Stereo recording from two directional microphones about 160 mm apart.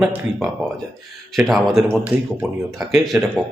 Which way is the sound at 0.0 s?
5° right (ahead or behind).